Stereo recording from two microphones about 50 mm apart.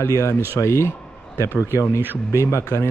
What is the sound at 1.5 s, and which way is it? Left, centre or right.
Speech, right.